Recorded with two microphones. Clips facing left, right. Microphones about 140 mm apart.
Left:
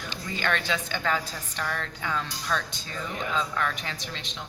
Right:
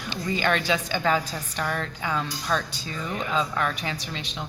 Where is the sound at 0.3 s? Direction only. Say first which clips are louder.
Right 4 dB; 15° right (ahead or behind).